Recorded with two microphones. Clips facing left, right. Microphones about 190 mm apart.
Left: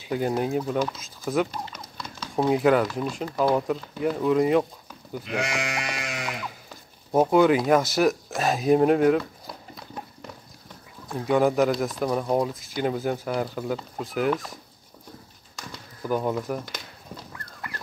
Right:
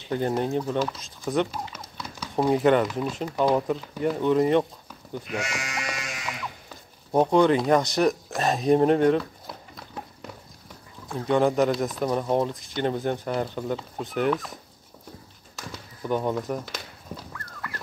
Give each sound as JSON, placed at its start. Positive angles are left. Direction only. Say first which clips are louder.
{"t": 0.1, "sound": "speech", "louder": "even", "side_deg": 5}
{"t": 1.5, "sound": "a sound", "louder": "even", "side_deg": -10}
{"t": 2.5, "sound": "speech", "louder": "even", "side_deg": 5}
{"t": 5.4, "sound": "music", "louder": "left 4 dB", "side_deg": 60}
{"t": 7.1, "sound": "speech", "louder": "left 1 dB", "side_deg": 5}
{"t": 11.1, "sound": "speech", "louder": "even", "side_deg": 5}
{"t": 15.5, "sound": "a sound", "louder": "right 1 dB", "side_deg": 0}